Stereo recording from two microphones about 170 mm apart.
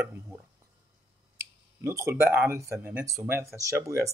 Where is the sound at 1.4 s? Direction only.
15° right (ahead or behind).